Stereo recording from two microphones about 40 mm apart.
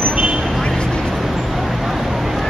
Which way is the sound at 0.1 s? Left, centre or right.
Right.